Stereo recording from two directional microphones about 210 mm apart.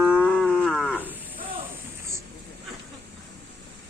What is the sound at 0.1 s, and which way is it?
Livestock, 10° left (ahead or behind).